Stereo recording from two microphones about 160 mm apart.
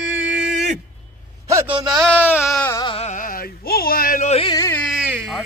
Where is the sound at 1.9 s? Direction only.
Centre (ahead or behind).